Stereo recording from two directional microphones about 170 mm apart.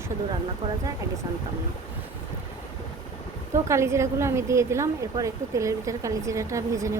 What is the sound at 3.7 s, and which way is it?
Speech, 15° right (ahead or behind).